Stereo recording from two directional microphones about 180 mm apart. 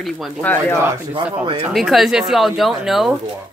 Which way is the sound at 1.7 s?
Centre (ahead or behind).